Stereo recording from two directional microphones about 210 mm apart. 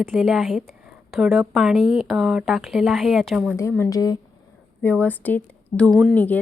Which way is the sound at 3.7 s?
15° left (ahead or behind).